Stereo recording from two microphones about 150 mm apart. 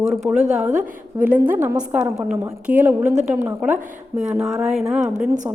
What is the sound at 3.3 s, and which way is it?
A woman's voice, 15° right (ahead or behind).